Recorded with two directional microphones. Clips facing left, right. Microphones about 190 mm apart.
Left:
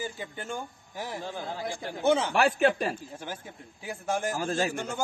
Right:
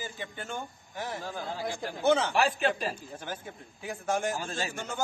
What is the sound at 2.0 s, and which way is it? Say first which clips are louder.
Speech: left 1 dB; 10° left (ahead or behind).